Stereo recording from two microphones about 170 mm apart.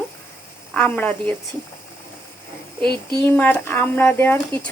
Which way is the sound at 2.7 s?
30° right (ahead or behind).